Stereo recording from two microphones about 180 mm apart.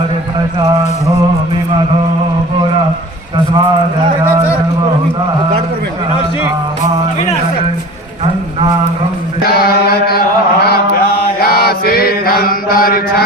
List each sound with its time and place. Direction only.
9.5 s chant: 60° left (ahead or behind)
11.3 s mantra: 55° left (ahead or behind)